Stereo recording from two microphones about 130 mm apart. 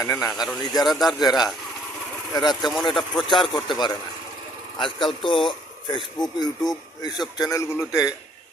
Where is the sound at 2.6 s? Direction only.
Centre (ahead or behind).